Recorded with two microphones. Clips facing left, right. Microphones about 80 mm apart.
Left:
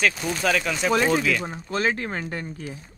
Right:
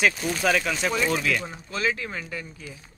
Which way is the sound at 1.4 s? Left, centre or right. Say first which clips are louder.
Left 3 dB; left.